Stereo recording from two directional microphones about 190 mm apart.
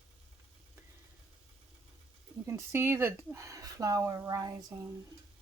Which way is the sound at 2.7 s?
15° right (ahead or behind).